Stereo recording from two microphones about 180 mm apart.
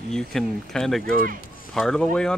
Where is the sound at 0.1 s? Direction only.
Centre (ahead or behind).